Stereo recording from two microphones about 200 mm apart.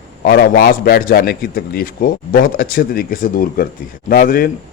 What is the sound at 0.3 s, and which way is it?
A man's voice, 50° left (ahead or behind).